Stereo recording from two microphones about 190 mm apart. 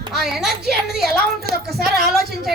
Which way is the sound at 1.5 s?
50° right (ahead or behind).